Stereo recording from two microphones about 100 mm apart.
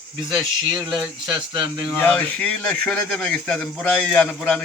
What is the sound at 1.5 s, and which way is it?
Speech, 35° right (ahead or behind).